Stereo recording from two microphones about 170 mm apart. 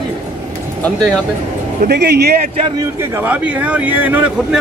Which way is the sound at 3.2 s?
10° right (ahead or behind).